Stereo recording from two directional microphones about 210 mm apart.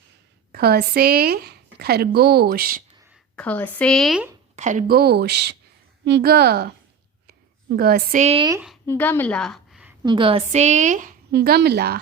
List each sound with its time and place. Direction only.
0.5 s speech: 50° right (ahead or behind)
3.3 s speech: 5° left (ahead or behind)
4.5 s speech: 35° right (ahead or behind)
7.8 s a woman's voice: 45° right (ahead or behind)
8.9 s a woman's voice: 10° left (ahead or behind)
10.0 s a woman's voice: 20° right (ahead or behind); by 11.9 s 50° right (ahead or behind)